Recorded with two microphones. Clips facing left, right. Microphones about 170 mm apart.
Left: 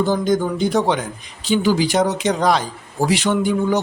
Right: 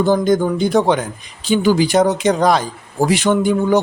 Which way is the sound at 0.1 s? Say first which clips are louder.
Right 4 dB; 55° right (ahead or behind).